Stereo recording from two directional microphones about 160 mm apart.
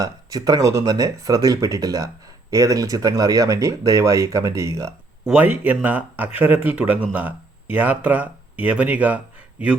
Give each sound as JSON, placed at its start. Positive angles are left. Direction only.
{"t": 0.0, "sound": "speech", "side_deg": -20}